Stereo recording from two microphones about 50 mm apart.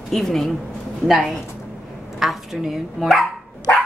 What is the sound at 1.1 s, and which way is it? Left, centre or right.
Speech, centre.